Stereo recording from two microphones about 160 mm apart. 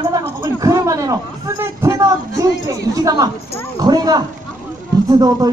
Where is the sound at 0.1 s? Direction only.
20° right (ahead or behind).